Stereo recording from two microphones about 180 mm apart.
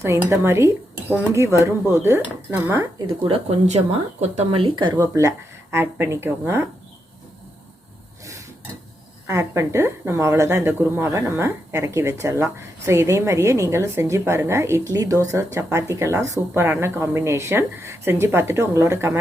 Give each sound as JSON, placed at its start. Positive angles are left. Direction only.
{"t": 0.0, "sound": "speech", "side_deg": -15}
{"t": 3.2, "sound": "speech", "side_deg": -35}
{"t": 8.2, "sound": "a sound", "side_deg": -15}
{"t": 9.2, "sound": "speech", "side_deg": -15}